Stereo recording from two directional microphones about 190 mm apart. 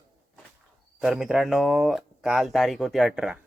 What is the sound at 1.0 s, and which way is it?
Speech, 5° right (ahead or behind).